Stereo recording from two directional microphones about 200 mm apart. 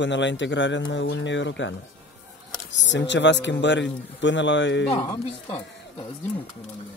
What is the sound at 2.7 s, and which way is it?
Speech, 65° left (ahead or behind).